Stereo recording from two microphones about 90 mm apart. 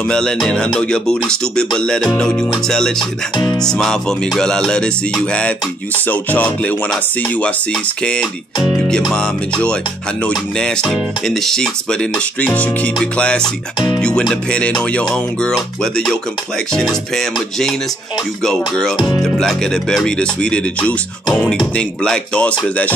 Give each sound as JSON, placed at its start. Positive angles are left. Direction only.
{"t": 0.0, "sound": "speech", "side_deg": 10}
{"t": 8.5, "sound": "music", "side_deg": -5}
{"t": 9.1, "sound": "speech", "side_deg": 10}
{"t": 16.8, "sound": "music", "side_deg": 5}
{"t": 19.2, "sound": "speech", "side_deg": 5}